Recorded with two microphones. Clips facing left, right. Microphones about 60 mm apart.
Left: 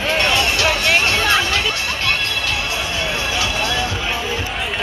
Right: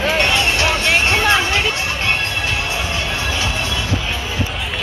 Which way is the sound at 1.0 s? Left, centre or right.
Right.